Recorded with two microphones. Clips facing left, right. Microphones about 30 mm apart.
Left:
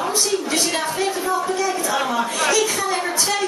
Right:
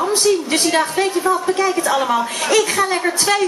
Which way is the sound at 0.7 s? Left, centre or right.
Right.